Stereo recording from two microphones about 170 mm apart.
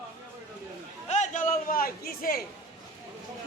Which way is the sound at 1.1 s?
45° left (ahead or behind).